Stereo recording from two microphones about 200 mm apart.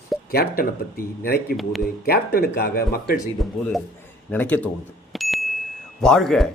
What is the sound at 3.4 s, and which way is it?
A man's voice, centre (ahead or behind).